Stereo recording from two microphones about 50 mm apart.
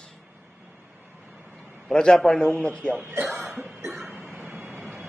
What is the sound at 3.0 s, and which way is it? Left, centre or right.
Speech, right.